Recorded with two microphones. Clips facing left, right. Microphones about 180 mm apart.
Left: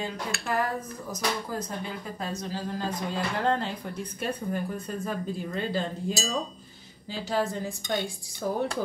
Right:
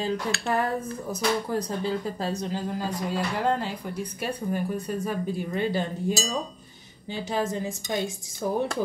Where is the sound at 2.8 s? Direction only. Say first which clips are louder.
Even; 5° right (ahead or behind).